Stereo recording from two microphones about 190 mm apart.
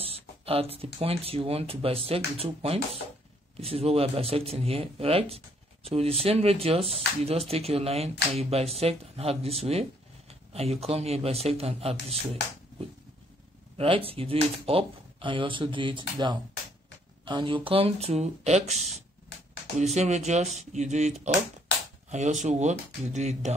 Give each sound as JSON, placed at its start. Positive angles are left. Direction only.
{"t": 0.0, "sound": "a sound", "side_deg": -30}
{"t": 0.9, "sound": "speech", "side_deg": -30}
{"t": 13.7, "sound": "speech", "side_deg": -30}